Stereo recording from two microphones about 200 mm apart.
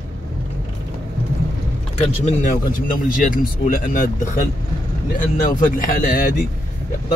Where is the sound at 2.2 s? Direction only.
40° left (ahead or behind).